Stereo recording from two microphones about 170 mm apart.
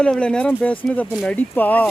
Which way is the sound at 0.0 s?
5° left (ahead or behind).